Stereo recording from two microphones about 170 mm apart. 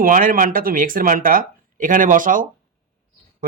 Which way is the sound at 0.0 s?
55° right (ahead or behind).